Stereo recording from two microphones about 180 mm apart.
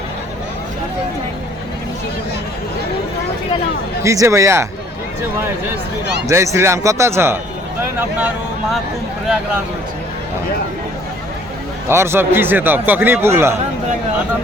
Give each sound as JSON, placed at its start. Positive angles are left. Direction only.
{"t": 4.0, "sound": "a man's voice", "side_deg": -15}
{"t": 6.2, "sound": "a man's voice", "side_deg": -15}
{"t": 11.9, "sound": "a man's voice", "side_deg": -15}